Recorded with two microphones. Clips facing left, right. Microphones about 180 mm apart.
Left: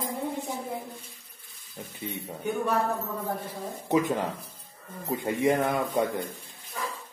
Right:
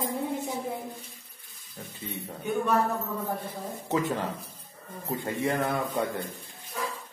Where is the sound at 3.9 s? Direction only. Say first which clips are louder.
Left 3 dB; 15° left (ahead or behind).